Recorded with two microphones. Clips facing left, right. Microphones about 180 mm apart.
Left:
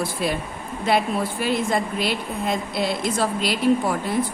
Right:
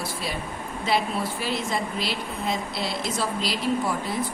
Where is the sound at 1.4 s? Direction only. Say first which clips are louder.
Left 5 dB; 55° left (ahead or behind).